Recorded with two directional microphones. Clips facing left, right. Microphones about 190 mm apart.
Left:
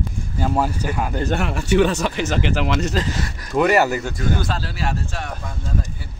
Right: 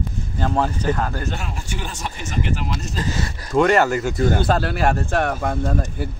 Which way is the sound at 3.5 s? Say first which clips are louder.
Right 1 dB; 5° left (ahead or behind).